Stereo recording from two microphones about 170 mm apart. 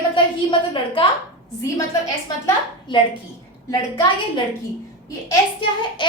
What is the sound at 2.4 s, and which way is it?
Speech, 30° left (ahead or behind).